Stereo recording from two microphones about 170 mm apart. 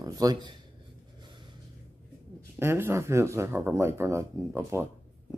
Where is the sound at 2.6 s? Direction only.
15° right (ahead or behind).